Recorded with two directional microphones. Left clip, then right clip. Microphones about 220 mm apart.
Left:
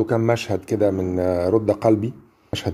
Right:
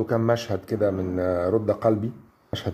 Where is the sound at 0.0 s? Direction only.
25° left (ahead or behind).